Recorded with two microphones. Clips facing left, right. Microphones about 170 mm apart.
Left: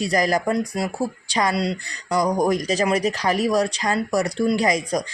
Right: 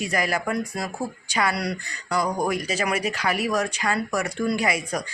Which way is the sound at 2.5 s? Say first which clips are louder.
Left 5 dB; 35° left (ahead or behind).